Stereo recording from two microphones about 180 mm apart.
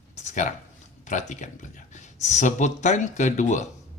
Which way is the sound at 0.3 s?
45° left (ahead or behind).